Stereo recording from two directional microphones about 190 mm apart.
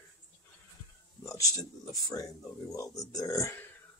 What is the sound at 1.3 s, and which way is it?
Speech, 20° left (ahead or behind).